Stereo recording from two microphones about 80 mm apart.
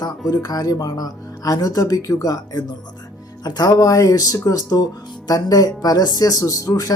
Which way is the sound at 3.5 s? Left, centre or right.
Left.